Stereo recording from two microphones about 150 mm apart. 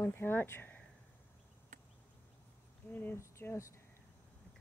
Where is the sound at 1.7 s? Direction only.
60° right (ahead or behind).